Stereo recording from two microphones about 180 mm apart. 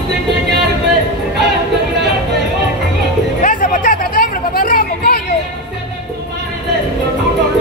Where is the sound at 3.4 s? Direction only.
45° left (ahead or behind).